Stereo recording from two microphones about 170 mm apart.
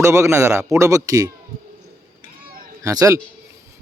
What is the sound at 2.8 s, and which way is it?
Speech, 20° right (ahead or behind).